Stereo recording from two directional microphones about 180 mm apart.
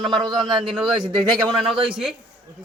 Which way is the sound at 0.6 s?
Centre (ahead or behind).